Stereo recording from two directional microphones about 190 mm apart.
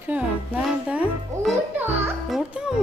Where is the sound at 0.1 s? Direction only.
5° right (ahead or behind).